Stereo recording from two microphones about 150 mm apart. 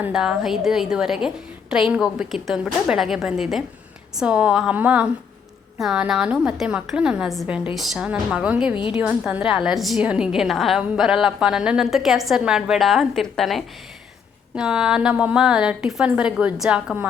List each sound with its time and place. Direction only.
0.0 s a woman's voice: 5° right (ahead or behind)
8.7 s a woman's voice: 35° left (ahead or behind)
9.0 s a woman's voice: 10° right (ahead or behind)